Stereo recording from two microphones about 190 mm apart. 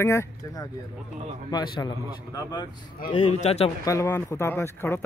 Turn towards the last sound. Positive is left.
turn(degrees=10)  # may be behind; listen again after turning